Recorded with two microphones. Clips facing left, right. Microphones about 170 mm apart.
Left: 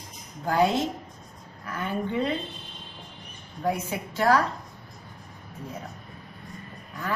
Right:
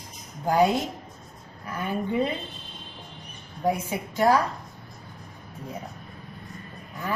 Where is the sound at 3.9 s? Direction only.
15° right (ahead or behind).